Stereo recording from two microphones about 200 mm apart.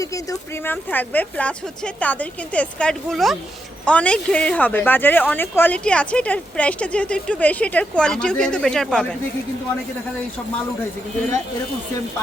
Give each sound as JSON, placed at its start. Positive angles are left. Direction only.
{"t": 0.0, "sound": "speech", "side_deg": 15}